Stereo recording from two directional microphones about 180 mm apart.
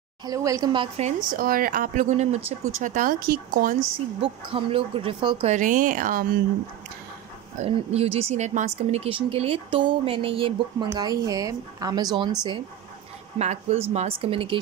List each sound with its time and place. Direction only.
0.2 s speech: 20° right (ahead or behind)
0.9 s speech: 45° right (ahead or behind)
4.5 s speech: 30° right (ahead or behind)
5.5 s speech: 45° right (ahead or behind)
7.6 s speech: 35° right (ahead or behind)
13.4 s speech: 35° right (ahead or behind)